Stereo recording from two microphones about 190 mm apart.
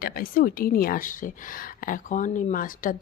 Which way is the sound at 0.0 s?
50° left (ahead or behind).